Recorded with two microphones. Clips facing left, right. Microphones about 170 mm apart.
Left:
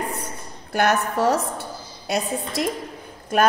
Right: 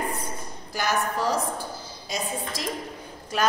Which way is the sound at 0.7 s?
65° left (ahead or behind).